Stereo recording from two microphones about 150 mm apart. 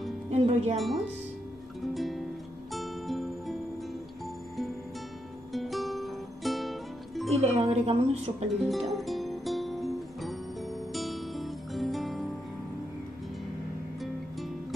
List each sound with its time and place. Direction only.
0.3 s music: 45° right (ahead or behind)
1.8 s music: centre (ahead or behind)
5.5 s music: centre (ahead or behind)
7.2 s speech: 45° right (ahead or behind)
8.6 s music: centre (ahead or behind)